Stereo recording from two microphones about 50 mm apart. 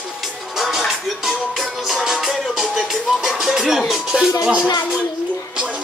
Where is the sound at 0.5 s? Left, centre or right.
Centre.